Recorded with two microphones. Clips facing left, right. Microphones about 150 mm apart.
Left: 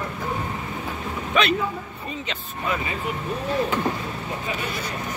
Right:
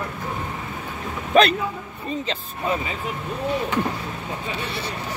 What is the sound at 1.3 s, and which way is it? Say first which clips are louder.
Speech: right 6 dB; 35° right (ahead or behind).